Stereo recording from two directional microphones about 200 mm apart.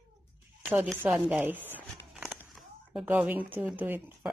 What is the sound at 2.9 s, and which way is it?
Speech, 10° right (ahead or behind).